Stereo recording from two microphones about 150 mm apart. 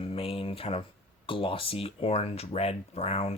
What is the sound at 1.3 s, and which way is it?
Speech, 35° left (ahead or behind).